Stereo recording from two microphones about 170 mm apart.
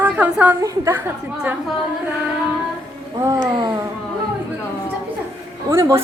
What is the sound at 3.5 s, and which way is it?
Speech, 25° right (ahead or behind).